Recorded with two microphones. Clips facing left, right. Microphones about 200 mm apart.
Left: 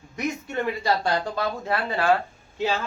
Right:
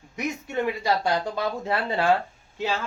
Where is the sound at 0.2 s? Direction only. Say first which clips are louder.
Even; 15° right (ahead or behind).